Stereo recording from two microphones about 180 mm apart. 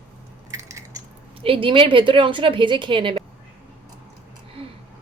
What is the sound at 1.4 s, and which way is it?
A woman's voice, 30° right (ahead or behind).